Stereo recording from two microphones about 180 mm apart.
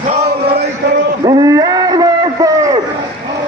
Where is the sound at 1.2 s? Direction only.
20° right (ahead or behind).